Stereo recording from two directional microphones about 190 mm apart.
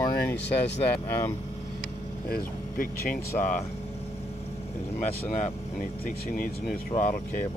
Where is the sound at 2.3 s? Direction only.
50° left (ahead or behind).